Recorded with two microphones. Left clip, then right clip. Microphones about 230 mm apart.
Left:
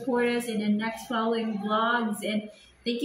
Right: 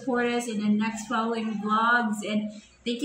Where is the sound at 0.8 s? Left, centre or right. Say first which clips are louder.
Right 1 dB; centre.